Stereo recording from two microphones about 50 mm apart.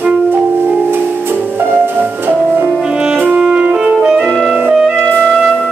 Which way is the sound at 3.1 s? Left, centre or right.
Right.